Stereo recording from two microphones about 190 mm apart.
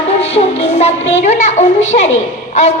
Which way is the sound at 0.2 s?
35° left (ahead or behind).